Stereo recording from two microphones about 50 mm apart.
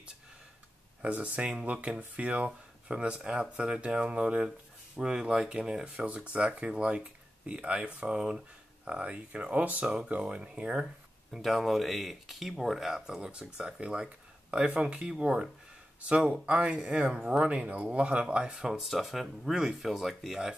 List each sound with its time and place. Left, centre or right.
1.0 s speech: right
5.9 s speech: right
11.4 s speech: centre
13.0 s speech: centre
18.8 s speech: centre